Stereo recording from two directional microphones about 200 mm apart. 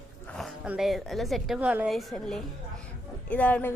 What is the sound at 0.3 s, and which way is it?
A woman's voice, centre (ahead or behind).